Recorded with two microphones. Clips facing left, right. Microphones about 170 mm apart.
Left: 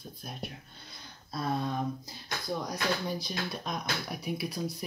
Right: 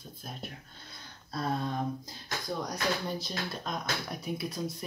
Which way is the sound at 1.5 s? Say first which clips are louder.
Left 2 dB; 5° left (ahead or behind).